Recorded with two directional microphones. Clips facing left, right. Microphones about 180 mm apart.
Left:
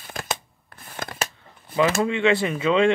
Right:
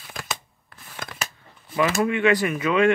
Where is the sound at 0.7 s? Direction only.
45° left (ahead or behind).